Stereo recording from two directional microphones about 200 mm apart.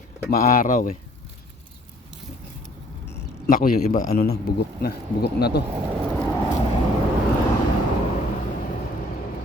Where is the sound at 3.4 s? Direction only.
45° left (ahead or behind).